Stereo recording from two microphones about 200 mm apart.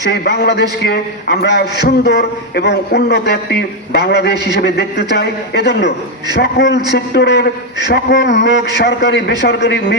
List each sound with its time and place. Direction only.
0.1 s a man's voice: 55° left (ahead or behind)